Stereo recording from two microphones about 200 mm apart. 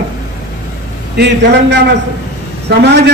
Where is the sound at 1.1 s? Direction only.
60° right (ahead or behind).